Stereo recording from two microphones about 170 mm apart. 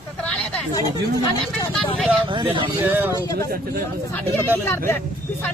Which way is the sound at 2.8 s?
10° right (ahead or behind).